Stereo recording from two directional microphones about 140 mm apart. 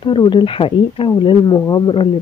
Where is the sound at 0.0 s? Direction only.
35° left (ahead or behind).